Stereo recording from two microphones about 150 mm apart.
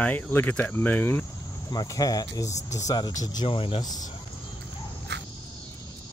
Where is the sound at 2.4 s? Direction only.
50° left (ahead or behind).